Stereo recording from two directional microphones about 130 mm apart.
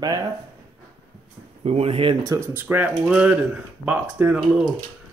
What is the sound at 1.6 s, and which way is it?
Speech, 50° right (ahead or behind).